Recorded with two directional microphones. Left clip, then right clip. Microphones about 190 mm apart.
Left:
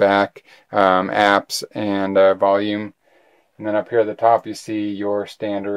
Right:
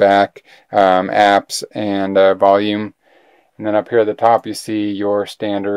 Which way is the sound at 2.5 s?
40° right (ahead or behind).